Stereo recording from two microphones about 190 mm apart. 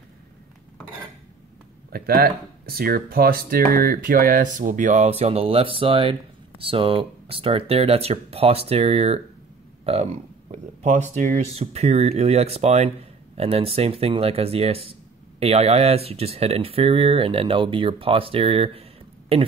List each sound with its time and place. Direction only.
1.9 s speech: 55° right (ahead or behind); by 9.2 s 30° right (ahead or behind)
10.5 s speech: 35° right (ahead or behind)